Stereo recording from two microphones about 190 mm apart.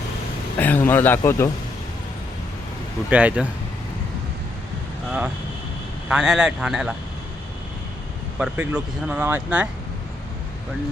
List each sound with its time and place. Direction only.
0.6 s speech: 10° left (ahead or behind)
3.1 s speech: 5° right (ahead or behind)
6.1 s speech: 5° right (ahead or behind)
8.4 s speech: 5° right (ahead or behind)